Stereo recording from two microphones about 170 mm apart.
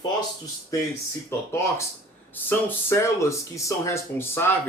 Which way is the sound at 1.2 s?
15° left (ahead or behind).